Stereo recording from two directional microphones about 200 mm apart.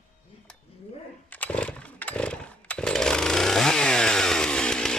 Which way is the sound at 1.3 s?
5° left (ahead or behind).